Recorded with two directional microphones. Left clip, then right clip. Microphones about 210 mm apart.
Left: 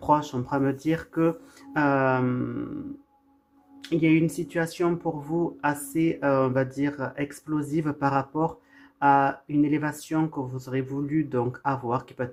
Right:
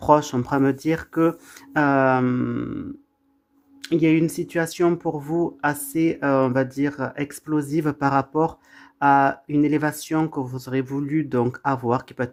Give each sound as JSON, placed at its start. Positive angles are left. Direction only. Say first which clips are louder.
{"t": 0.0, "sound": "speech", "louder": "right 6 dB", "side_deg": -45}
{"t": 3.8, "sound": "speech", "louder": "right 3 dB", "side_deg": -45}